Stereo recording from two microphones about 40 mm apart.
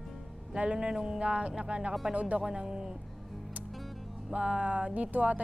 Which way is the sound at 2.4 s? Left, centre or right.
Centre.